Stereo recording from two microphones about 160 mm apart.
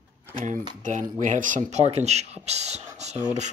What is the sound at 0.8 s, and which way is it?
Speech, 50° right (ahead or behind).